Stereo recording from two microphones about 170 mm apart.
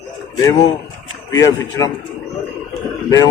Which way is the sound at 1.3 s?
20° left (ahead or behind).